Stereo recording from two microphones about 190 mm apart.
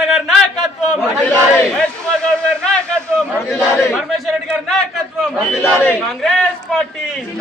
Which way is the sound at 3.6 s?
Centre (ahead or behind).